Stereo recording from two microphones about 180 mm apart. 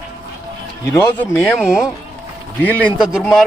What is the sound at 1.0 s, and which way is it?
Speech, 10° left (ahead or behind).